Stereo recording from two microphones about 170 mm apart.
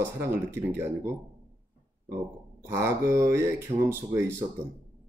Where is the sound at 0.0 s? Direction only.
15° right (ahead or behind).